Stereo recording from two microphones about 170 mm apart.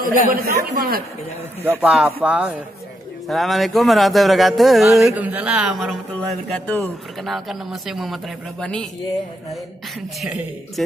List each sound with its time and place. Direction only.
0.0 s speech: 55° right (ahead or behind)
1.6 s speech: 10° right (ahead or behind); by 8.8 s 5° left (ahead or behind)